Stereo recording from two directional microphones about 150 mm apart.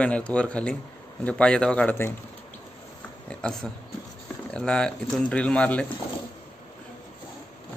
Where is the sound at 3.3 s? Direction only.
5° left (ahead or behind).